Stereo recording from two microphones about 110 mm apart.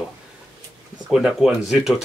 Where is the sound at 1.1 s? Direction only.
5° right (ahead or behind).